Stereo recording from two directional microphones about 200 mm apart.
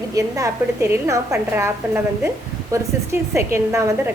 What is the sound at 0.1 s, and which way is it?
A woman's voice, 15° right (ahead or behind).